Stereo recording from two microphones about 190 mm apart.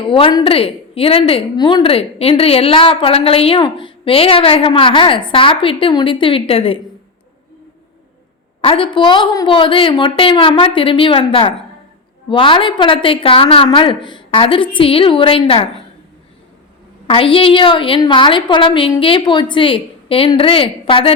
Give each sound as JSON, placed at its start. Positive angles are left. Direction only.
{"t": 0.1, "sound": "a woman's voice", "side_deg": 25}
{"t": 8.6, "sound": "a woman's voice", "side_deg": 30}
{"t": 17.1, "sound": "a woman's voice", "side_deg": 30}